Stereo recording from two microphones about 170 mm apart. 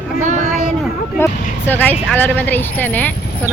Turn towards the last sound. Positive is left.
turn(degrees=10)  # may be behind; listen again after turning